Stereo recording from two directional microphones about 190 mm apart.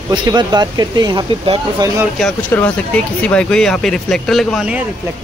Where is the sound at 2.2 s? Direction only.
5° left (ahead or behind).